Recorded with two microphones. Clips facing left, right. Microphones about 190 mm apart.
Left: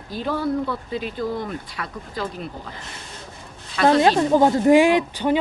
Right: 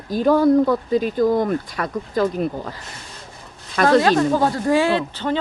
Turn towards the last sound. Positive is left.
turn(degrees=15)  # may be behind; listen again after turning